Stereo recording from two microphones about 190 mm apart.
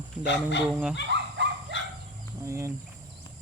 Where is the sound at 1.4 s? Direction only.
70° right (ahead or behind).